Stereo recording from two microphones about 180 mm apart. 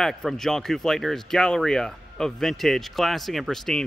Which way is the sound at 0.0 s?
Centre (ahead or behind).